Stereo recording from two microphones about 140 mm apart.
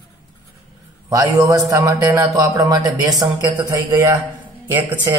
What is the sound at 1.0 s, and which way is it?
Speech, 30° right (ahead or behind).